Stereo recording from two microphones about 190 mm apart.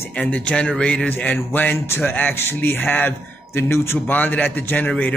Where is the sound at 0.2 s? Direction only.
5° left (ahead or behind).